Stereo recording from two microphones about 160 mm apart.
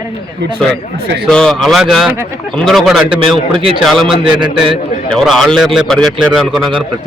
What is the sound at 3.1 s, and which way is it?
Speech, 35° right (ahead or behind).